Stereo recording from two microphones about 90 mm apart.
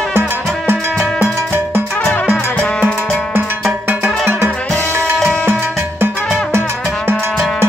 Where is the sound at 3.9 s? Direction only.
25° right (ahead or behind).